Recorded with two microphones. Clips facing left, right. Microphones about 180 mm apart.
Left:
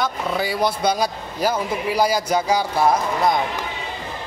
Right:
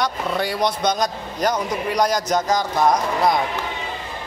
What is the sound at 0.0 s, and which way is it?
Speech, 5° left (ahead or behind).